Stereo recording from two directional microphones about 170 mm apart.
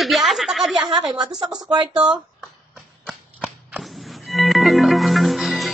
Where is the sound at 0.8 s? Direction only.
25° right (ahead or behind).